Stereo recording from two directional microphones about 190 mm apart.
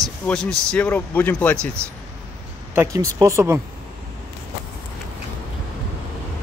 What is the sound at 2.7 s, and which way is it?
Speech, 15° right (ahead or behind).